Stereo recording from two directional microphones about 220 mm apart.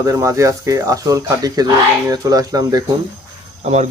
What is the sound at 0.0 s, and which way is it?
Speech, 15° right (ahead or behind).